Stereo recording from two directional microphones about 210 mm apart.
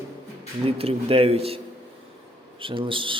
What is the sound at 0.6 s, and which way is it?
Speech, 30° right (ahead or behind).